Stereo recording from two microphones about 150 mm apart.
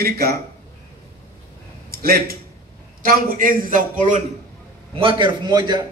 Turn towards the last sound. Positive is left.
turn(degrees=-30)  # may be behind; listen again after turning